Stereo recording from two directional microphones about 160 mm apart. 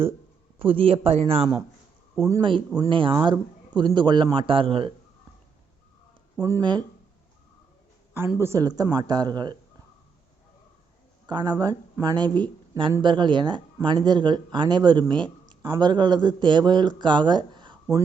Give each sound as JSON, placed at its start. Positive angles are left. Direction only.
{"t": 0.6, "sound": "speech", "side_deg": -35}
{"t": 6.4, "sound": "speech", "side_deg": -25}
{"t": 8.4, "sound": "speech", "side_deg": -20}
{"t": 11.3, "sound": "speech", "side_deg": -25}